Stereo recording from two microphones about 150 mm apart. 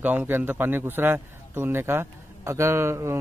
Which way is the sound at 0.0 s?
10° right (ahead or behind).